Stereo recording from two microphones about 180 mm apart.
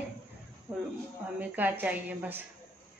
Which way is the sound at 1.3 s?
10° right (ahead or behind).